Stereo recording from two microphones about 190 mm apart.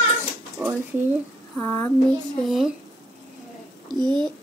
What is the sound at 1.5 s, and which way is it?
Speech, 10° left (ahead or behind).